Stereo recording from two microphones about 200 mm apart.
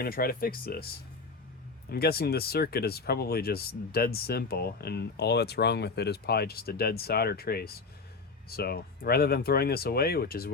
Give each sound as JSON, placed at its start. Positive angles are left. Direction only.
{"t": 0.0, "sound": "speech", "side_deg": 50}
{"t": 1.9, "sound": "speech", "side_deg": 50}